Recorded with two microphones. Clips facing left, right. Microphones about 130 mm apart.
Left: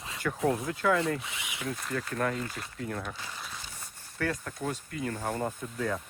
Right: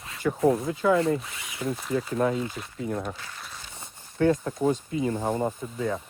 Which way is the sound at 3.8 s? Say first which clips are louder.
Right 10 dB; 20° right (ahead or behind).